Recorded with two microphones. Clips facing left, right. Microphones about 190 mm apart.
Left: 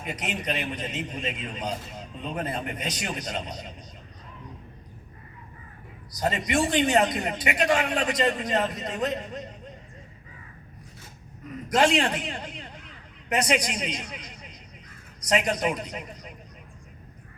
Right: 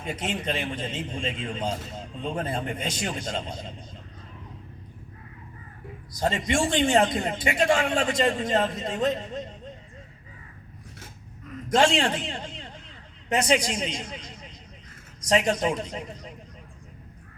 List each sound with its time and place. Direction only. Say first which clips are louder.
0.0 s a man's voice: right 2 dB; 25° right (ahead or behind)
6.1 s a man's voice: even; 25° right (ahead or behind)
11.7 s a man's voice: right 1 dB; 25° right (ahead or behind)